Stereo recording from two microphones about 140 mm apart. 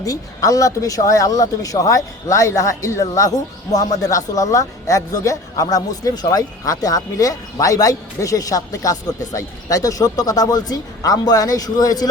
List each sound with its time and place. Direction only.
0.0 s speech: 25° left (ahead or behind)